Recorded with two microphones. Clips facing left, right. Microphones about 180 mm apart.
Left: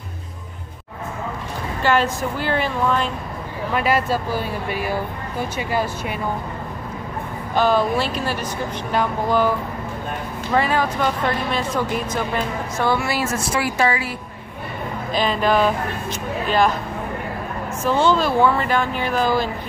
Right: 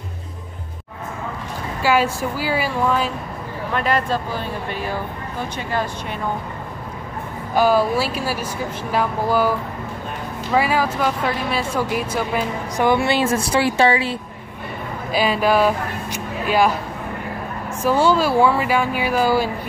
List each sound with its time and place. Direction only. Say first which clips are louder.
1.8 s speech: right 1 dB; 10° right (ahead or behind)
3.7 s speech: left 1 dB; 5° left (ahead or behind)
7.5 s speech: right 2 dB; 5° right (ahead or behind)
10.5 s speech: right 1 dB; 5° right (ahead or behind); by 14.1 s 25° right (ahead or behind)
15.1 s speech: right 1 dB; 10° right (ahead or behind)
17.8 s speech: right 1 dB; 10° right (ahead or behind)